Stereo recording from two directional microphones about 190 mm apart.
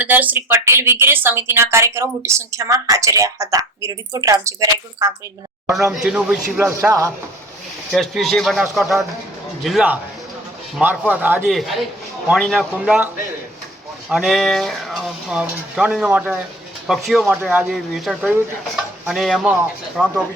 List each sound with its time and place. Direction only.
0.0 s a woman's voice: 10° right (ahead or behind)
5.7 s a woman's voice: centre (ahead or behind)
7.9 s speech: centre (ahead or behind)
14.1 s speech: centre (ahead or behind)